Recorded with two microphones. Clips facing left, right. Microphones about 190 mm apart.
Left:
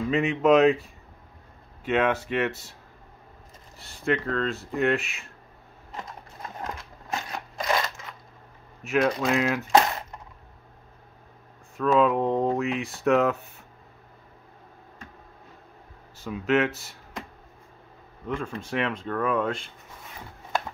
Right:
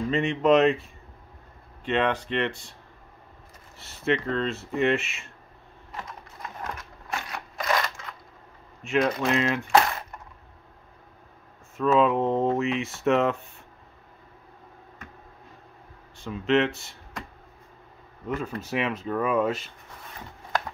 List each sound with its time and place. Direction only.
0.1 s speech: 5° left (ahead or behind)
1.9 s speech: 5° left (ahead or behind)
3.7 s speech: centre (ahead or behind)
6.6 s a sound: 20° left (ahead or behind)
8.8 s speech: centre (ahead or behind)
9.7 s coin: 20° left (ahead or behind)
11.7 s speech: centre (ahead or behind)
16.3 s speech: centre (ahead or behind)
18.6 s speech: 5° right (ahead or behind)